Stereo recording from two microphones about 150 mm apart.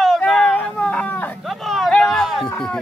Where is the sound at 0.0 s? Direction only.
Centre (ahead or behind).